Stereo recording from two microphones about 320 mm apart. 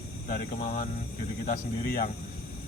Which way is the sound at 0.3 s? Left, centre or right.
Left.